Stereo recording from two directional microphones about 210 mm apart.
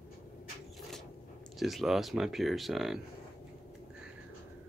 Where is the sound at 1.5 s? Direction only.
Centre (ahead or behind).